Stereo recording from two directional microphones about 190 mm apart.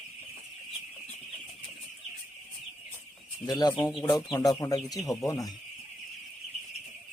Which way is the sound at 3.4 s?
20° left (ahead or behind).